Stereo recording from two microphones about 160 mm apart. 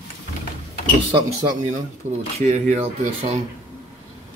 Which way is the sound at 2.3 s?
45° right (ahead or behind).